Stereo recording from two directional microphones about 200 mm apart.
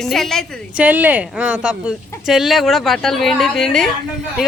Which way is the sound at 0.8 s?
10° right (ahead or behind).